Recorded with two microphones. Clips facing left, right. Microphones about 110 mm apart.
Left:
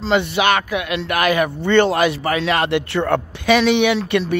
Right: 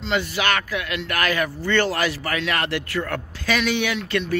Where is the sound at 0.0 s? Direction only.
25° left (ahead or behind).